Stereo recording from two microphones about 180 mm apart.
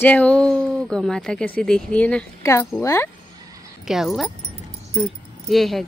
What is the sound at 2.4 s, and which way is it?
Speech, 15° left (ahead or behind).